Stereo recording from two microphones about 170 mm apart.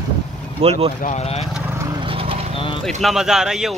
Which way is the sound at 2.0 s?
30° right (ahead or behind).